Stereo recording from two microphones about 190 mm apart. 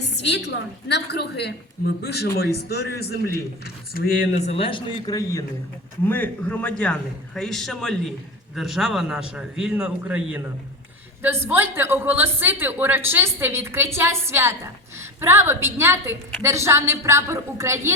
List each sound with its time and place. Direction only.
0.0 s a woman's voice: 65° left (ahead or behind); by 4.3 s 50° left (ahead or behind)
4.4 s a man's voice: 35° left (ahead or behind); by 17.9 s 15° right (ahead or behind)